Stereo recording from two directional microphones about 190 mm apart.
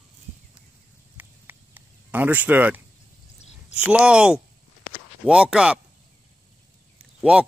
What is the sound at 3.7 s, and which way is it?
Speech, 5° right (ahead or behind).